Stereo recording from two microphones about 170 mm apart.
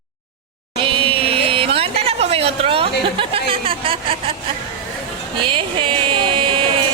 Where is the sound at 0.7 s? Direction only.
30° right (ahead or behind).